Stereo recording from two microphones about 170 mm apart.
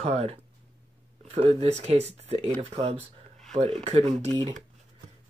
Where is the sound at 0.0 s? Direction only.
35° right (ahead or behind).